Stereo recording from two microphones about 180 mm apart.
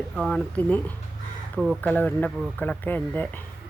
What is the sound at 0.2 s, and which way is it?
Speech, 5° left (ahead or behind).